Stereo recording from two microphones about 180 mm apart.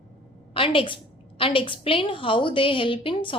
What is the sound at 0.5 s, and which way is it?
A woman's voice, 30° left (ahead or behind).